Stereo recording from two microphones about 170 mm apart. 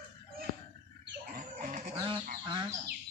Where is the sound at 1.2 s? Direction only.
50° right (ahead or behind).